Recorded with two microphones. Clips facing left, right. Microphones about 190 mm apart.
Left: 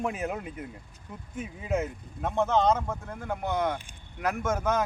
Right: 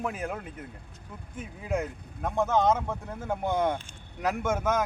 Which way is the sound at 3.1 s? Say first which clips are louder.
Right 3 dB; 20° right (ahead or behind).